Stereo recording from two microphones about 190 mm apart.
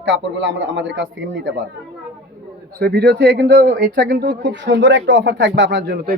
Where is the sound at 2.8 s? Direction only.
60° right (ahead or behind).